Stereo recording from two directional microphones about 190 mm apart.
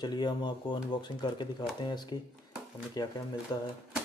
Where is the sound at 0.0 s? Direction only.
20° left (ahead or behind).